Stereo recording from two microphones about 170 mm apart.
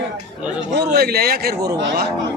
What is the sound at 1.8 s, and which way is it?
Speech, 80° right.